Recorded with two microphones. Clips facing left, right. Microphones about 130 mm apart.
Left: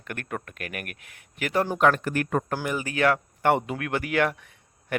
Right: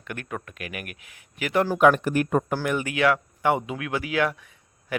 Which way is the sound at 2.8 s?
40° left (ahead or behind).